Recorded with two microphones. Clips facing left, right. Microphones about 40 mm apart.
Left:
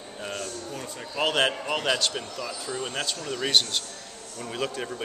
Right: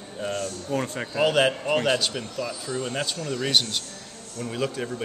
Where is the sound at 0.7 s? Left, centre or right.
Right.